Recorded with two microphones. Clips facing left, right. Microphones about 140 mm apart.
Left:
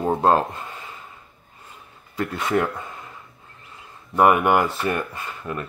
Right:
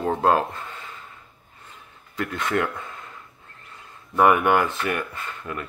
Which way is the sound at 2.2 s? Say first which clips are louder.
Left 2 dB; 10° left (ahead or behind).